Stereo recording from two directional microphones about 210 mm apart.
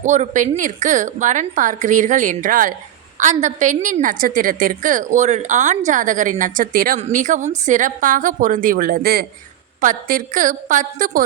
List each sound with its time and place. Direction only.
0.0 s a woman's voice: 35° right (ahead or behind)